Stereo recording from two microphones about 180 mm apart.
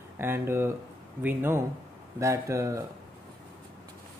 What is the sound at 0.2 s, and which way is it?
Speech, 15° right (ahead or behind).